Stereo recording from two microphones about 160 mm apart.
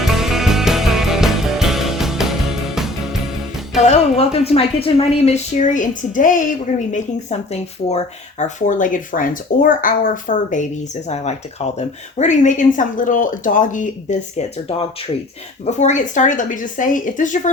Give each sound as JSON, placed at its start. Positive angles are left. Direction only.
{"t": 0.0, "sound": "music", "side_deg": 0}
{"t": 3.8, "sound": "speech", "side_deg": 45}
{"t": 11.8, "sound": "speech", "side_deg": 45}